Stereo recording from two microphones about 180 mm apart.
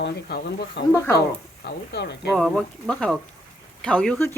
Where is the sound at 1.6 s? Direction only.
70° left (ahead or behind).